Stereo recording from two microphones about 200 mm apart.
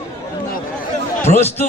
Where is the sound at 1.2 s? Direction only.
30° left (ahead or behind).